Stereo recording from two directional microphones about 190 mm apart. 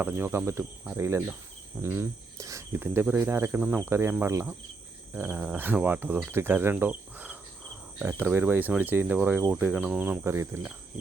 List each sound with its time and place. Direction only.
0.0 s speech: 10° right (ahead or behind)